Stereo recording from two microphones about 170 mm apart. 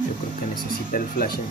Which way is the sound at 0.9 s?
55° left (ahead or behind).